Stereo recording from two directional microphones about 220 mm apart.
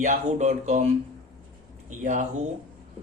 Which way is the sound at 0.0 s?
35° right (ahead or behind).